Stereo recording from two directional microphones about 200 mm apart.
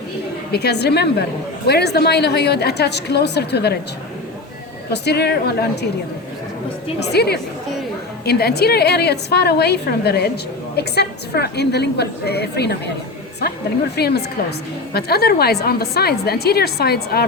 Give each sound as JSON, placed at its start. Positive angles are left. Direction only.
{"t": 0.5, "sound": "a woman's voice", "side_deg": 55}
{"t": 4.9, "sound": "a woman's voice", "side_deg": 55}
{"t": 7.0, "sound": "a woman's voice", "side_deg": 55}
{"t": 13.9, "sound": "a woman's voice", "side_deg": 55}